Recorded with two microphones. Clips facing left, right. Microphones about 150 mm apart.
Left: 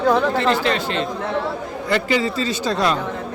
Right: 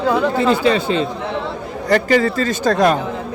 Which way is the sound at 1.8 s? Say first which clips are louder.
Right 5 dB; 45° right (ahead or behind).